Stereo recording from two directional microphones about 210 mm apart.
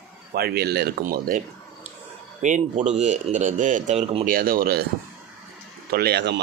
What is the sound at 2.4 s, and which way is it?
A man's voice, 35° right (ahead or behind).